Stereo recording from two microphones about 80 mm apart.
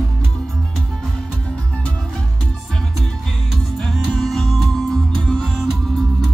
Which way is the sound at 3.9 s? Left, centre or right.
Centre.